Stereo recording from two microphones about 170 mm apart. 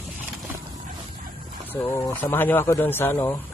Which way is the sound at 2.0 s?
10° left (ahead or behind).